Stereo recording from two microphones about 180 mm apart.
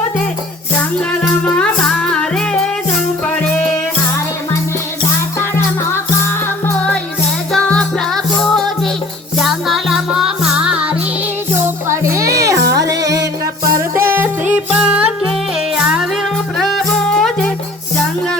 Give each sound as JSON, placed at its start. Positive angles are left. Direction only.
{"t": 0.9, "sound": "music", "side_deg": 5}
{"t": 5.4, "sound": "music", "side_deg": 15}
{"t": 11.6, "sound": "music", "side_deg": -15}